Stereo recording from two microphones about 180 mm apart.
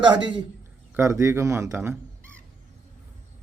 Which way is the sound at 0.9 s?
15° right (ahead or behind).